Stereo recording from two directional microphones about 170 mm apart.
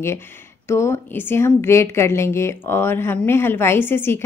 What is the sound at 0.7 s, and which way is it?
A woman's voice, 15° left (ahead or behind).